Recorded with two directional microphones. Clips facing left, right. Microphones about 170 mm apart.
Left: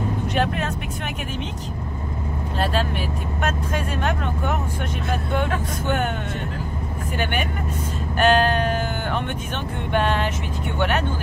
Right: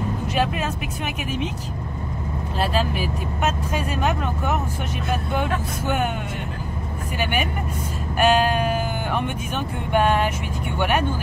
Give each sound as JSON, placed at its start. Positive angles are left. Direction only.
{"t": 0.3, "sound": "speech", "side_deg": -5}
{"t": 2.6, "sound": "speech", "side_deg": -5}
{"t": 8.2, "sound": "speech", "side_deg": -10}
{"t": 9.9, "sound": "vehicle", "side_deg": -10}